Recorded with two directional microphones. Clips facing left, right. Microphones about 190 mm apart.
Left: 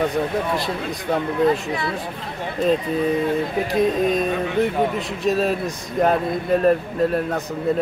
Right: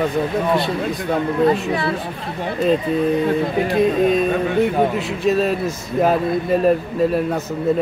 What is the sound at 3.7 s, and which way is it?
A man's voice, centre (ahead or behind).